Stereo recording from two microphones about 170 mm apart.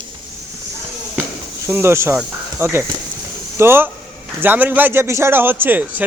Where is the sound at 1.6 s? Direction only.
15° right (ahead or behind).